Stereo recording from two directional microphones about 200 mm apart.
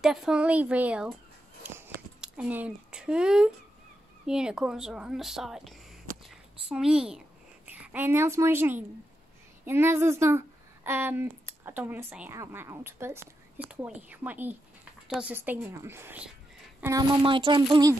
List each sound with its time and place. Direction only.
0.0 s a woman's voice: centre (ahead or behind); by 17.9 s 20° right (ahead or behind)